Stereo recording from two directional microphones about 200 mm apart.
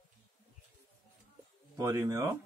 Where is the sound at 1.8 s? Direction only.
15° right (ahead or behind).